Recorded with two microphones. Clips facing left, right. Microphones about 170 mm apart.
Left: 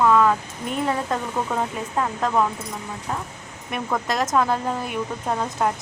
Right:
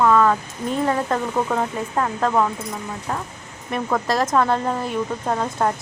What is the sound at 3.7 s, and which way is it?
A woman's voice, centre (ahead or behind).